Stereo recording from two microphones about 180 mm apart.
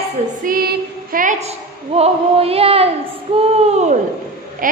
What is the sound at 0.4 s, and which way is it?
Speech, 55° right (ahead or behind).